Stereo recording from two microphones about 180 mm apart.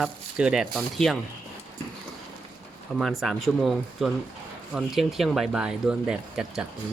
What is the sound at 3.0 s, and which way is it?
Speech, centre (ahead or behind).